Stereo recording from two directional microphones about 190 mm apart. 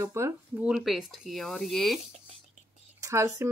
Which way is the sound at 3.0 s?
15° right (ahead or behind).